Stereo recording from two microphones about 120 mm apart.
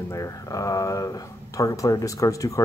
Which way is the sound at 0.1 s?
30° left (ahead or behind).